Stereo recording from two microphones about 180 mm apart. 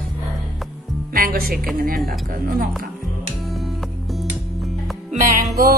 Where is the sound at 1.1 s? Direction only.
55° right (ahead or behind).